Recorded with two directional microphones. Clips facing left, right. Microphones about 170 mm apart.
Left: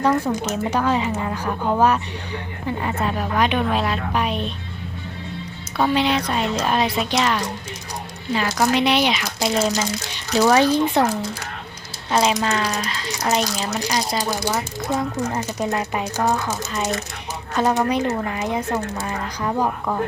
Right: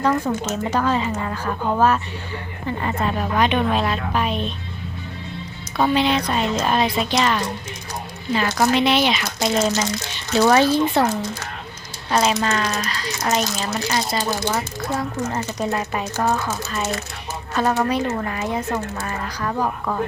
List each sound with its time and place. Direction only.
0.0 s speech: 15° left (ahead or behind)
5.9 s speech: 10° left (ahead or behind)
10.3 s speech: 10° left (ahead or behind)
12.1 s speech: 10° left (ahead or behind)